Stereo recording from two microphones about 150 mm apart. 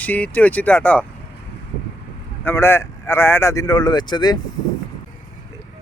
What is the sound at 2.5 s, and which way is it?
Speech, 15° left (ahead or behind).